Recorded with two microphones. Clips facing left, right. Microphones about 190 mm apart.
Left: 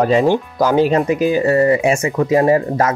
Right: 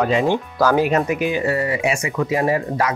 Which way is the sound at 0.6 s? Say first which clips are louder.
Left 2 dB; 20° left (ahead or behind).